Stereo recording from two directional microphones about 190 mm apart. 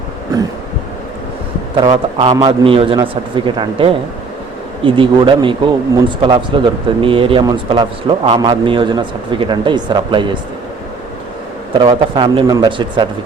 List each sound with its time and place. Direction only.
1.7 s a man's voice: 25° right (ahead or behind)
11.8 s a man's voice: 25° right (ahead or behind)